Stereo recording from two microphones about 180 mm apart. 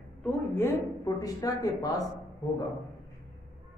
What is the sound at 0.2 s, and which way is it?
Speech, 15° left (ahead or behind).